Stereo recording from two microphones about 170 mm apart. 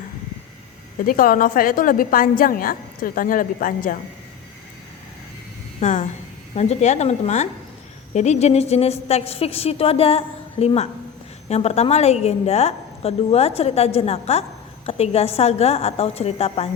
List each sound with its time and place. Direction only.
1.0 s a woman's voice: 55° left (ahead or behind)
5.8 s a woman's voice: 45° left (ahead or behind)